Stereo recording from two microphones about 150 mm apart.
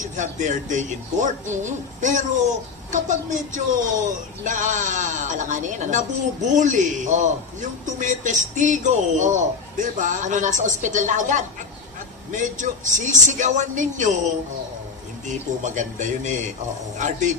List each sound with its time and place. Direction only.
0.1 s speech: 55° right (ahead or behind)